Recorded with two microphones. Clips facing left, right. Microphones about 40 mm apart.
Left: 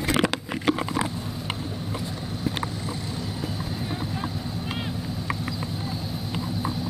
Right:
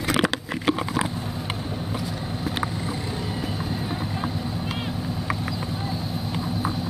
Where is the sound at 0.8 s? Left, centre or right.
Centre.